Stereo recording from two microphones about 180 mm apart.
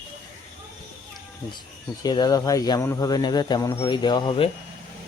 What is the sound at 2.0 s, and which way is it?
Speech, 20° left (ahead or behind).